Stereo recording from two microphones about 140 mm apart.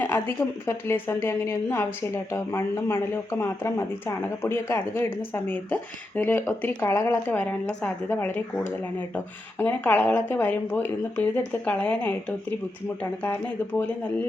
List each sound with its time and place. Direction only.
0.0 s speech: 15° left (ahead or behind)
13.7 s speech: 10° left (ahead or behind)